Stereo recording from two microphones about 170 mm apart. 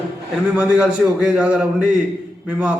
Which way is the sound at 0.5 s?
5° right (ahead or behind).